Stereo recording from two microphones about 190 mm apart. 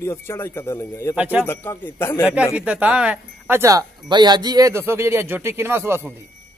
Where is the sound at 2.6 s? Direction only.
5° right (ahead or behind).